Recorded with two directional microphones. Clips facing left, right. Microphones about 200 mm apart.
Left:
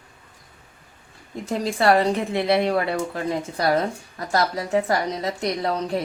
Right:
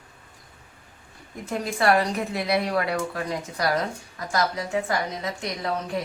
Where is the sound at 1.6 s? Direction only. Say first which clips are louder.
Left 3 dB; 30° left (ahead or behind).